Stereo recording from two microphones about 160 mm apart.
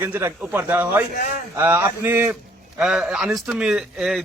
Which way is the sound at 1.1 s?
65° left (ahead or behind).